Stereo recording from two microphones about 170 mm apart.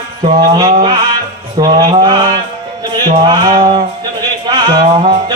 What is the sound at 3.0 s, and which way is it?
Music, 30° right (ahead or behind).